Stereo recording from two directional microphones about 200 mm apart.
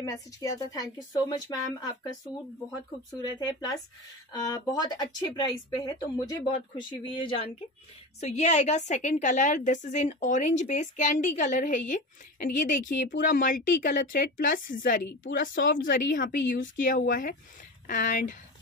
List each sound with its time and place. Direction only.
0.0 s a woman's voice: 15° left (ahead or behind)
3.2 s a woman's voice: 20° left (ahead or behind); by 18.4 s 40° left (ahead or behind)